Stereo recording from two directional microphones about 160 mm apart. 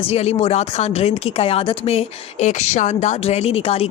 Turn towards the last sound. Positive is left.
turn(degrees=40)  # may be behind; listen again after turning